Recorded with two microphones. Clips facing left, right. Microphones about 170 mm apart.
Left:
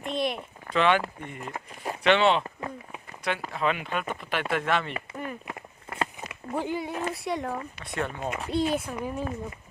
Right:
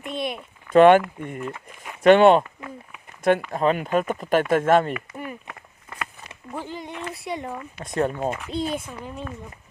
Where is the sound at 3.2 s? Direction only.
50° right (ahead or behind).